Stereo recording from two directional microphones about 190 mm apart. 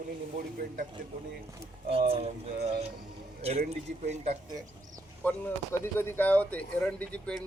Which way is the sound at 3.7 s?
35° right (ahead or behind).